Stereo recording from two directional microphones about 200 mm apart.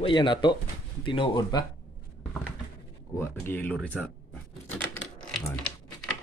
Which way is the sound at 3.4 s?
10° left (ahead or behind).